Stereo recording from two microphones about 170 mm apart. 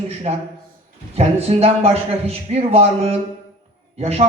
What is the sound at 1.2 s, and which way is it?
A man's voice, 35° right (ahead or behind).